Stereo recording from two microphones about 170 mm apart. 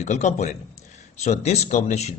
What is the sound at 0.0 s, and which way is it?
Speech, 45° left (ahead or behind).